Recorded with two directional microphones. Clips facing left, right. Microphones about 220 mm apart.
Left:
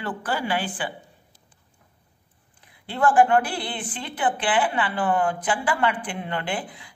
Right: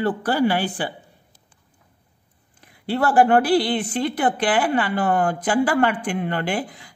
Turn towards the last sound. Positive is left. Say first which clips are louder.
# right 5 dB
turn(degrees=-40)  # may be behind; listen again after turning